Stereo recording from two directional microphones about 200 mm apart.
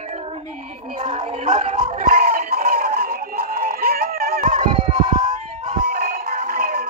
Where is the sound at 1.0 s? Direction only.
30° right (ahead or behind).